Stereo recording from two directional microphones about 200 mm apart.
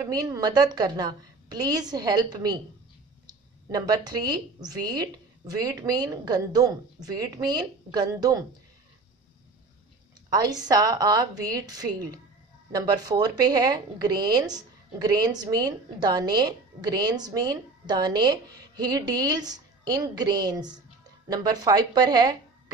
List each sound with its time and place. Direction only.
0.0 s a woman's voice: 20° right (ahead or behind)
10.3 s a woman's voice: 20° right (ahead or behind)